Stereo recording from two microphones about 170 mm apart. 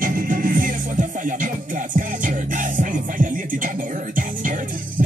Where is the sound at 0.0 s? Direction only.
55° right (ahead or behind).